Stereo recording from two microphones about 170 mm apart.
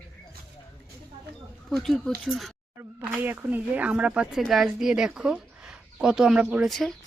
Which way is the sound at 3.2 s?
10° right (ahead or behind).